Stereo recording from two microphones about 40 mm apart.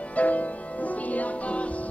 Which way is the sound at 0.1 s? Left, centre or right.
Left.